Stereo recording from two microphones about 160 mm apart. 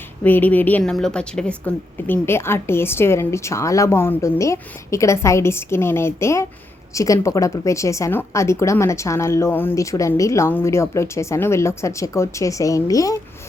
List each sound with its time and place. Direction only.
0.2 s a woman's voice: 10° left (ahead or behind)